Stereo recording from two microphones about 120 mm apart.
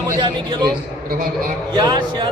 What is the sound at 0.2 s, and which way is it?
Speech, 40° right (ahead or behind).